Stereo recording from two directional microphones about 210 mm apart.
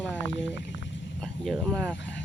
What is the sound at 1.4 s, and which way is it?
Speech, centre (ahead or behind).